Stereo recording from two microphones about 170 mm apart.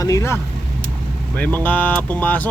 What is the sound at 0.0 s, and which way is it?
Speech, 20° left (ahead or behind).